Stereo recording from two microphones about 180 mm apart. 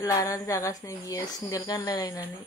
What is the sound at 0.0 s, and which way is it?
A woman's voice, 20° left (ahead or behind).